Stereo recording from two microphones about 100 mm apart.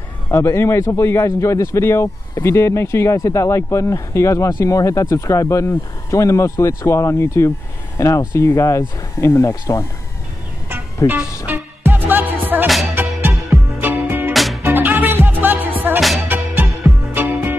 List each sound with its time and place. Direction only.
0.3 s speech: 25° left (ahead or behind)
11.0 s music: 35° left (ahead or behind)
11.4 s music: 20° right (ahead or behind)
14.3 s music: centre (ahead or behind)
14.6 s music: 20° right (ahead or behind)